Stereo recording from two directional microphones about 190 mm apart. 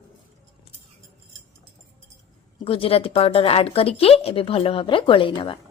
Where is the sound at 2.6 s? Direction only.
30° left (ahead or behind).